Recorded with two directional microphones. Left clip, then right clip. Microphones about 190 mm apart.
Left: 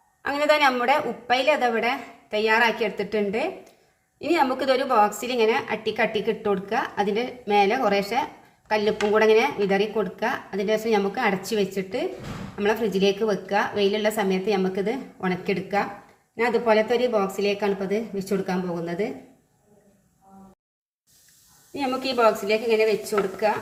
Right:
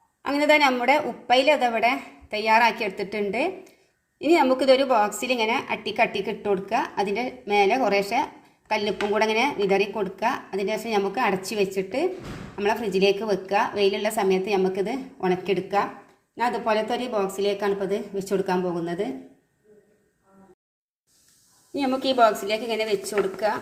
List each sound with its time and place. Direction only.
0.3 s a woman's voice: 10° right (ahead or behind)
21.8 s a woman's voice: 10° right (ahead or behind)